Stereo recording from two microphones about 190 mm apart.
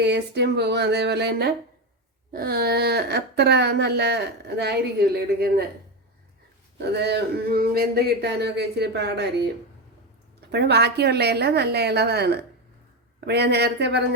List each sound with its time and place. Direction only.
0.0 s speech: 60° right (ahead or behind)
6.9 s speech: 60° right (ahead or behind)
10.5 s speech: 60° right (ahead or behind)